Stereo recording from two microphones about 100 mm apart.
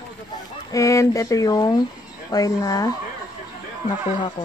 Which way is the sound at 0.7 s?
35° left (ahead or behind).